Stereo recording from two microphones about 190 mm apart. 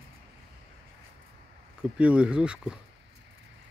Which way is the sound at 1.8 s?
5° right (ahead or behind).